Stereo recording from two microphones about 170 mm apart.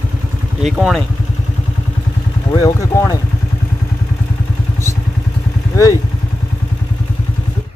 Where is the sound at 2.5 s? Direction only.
20° left (ahead or behind).